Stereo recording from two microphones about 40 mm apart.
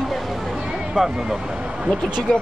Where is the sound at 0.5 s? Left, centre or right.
Centre.